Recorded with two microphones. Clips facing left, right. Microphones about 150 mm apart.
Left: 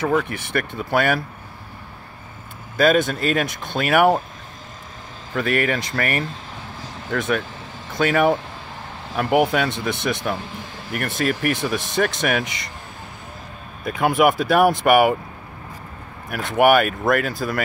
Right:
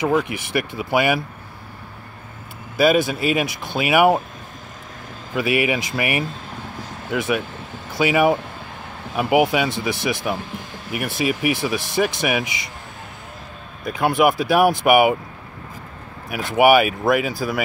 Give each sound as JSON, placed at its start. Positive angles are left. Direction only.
{"t": 0.0, "sound": "speech", "side_deg": -10}
{"t": 2.8, "sound": "speech", "side_deg": -5}
{"t": 5.3, "sound": "speech", "side_deg": -10}
{"t": 13.8, "sound": "speech", "side_deg": 0}
{"t": 16.3, "sound": "speech", "side_deg": -5}